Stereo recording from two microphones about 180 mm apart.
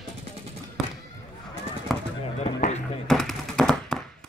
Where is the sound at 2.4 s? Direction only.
40° left (ahead or behind).